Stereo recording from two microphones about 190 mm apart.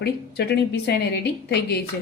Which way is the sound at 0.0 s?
60° left (ahead or behind).